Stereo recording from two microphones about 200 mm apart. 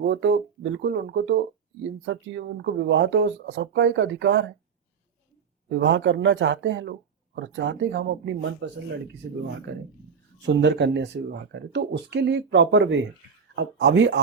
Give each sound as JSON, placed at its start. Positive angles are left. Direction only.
{"t": 0.0, "sound": "speech", "side_deg": -55}
{"t": 5.6, "sound": "speech", "side_deg": -65}
{"t": 10.4, "sound": "speech", "side_deg": -60}